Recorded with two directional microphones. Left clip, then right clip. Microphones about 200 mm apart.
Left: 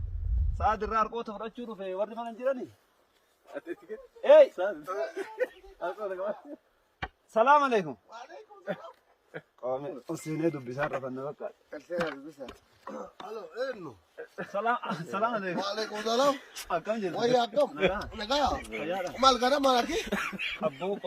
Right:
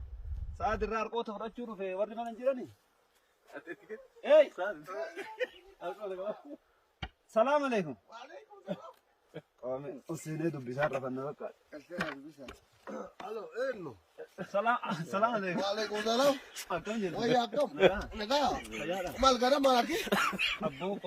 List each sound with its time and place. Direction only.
0.6 s a man's voice: centre (ahead or behind)
3.5 s speech: 45° left (ahead or behind)
4.2 s speech: 10° left (ahead or behind)
4.5 s speech: 45° left (ahead or behind)
4.9 s speech: 25° left (ahead or behind)
7.3 s speech: 10° left (ahead or behind)
8.1 s a sound: 15° right (ahead or behind)
9.6 s a man's voice: 10° left (ahead or behind)
10.8 s speech: 10° right (ahead or behind)
11.7 s speech: 20° left (ahead or behind)
11.9 s a man's voice: 15° right (ahead or behind)
20.1 s speech: 30° right (ahead or behind)
20.6 s a man's voice: centre (ahead or behind)